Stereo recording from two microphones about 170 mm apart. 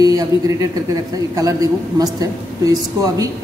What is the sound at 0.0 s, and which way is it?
A woman's voice, 20° right (ahead or behind).